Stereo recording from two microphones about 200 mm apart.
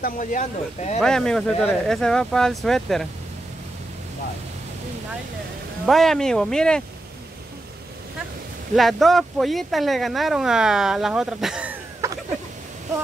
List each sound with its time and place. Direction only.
0.0 s speech: 40° left (ahead or behind)
1.0 s speech: 5° left (ahead or behind)
5.9 s speech: centre (ahead or behind)
8.7 s speech: centre (ahead or behind)